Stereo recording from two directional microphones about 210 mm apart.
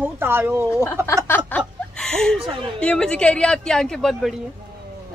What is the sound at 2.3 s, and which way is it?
Speech, 25° right (ahead or behind).